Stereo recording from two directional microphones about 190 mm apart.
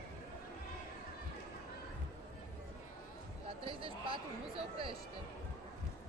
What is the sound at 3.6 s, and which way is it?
Speech, 30° right (ahead or behind).